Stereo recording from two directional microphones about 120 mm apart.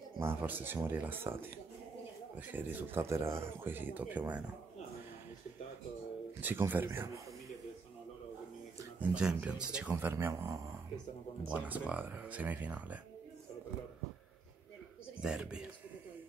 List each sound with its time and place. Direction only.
0.2 s speech: 15° right (ahead or behind)
6.4 s speech: 15° right (ahead or behind)
9.1 s speech: 5° right (ahead or behind)
9.9 s speech: 20° right (ahead or behind)
11.4 s speech: 15° right (ahead or behind)
15.2 s speech: 5° right (ahead or behind)